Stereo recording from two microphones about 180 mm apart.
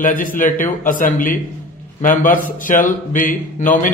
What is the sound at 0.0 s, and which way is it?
Speech, 50° left (ahead or behind).